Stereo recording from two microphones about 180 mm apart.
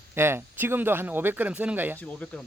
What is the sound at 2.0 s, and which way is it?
Speech, 5° left (ahead or behind).